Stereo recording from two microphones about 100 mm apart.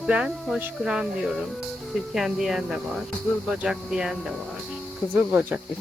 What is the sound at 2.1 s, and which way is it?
Speech, 5° right (ahead or behind).